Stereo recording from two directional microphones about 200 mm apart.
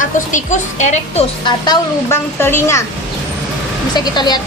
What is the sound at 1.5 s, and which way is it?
Speech, 20° left (ahead or behind).